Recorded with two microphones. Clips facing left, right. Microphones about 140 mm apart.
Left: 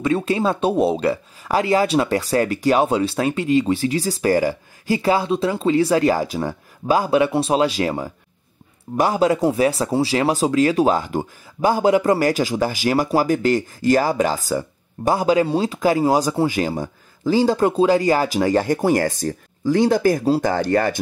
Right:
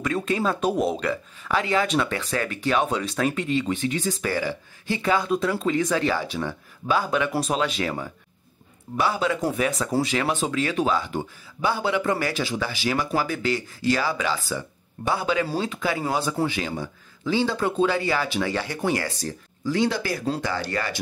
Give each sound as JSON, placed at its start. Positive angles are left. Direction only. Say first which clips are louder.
{"t": 0.0, "sound": "speech", "louder": "left 5 dB", "side_deg": 30}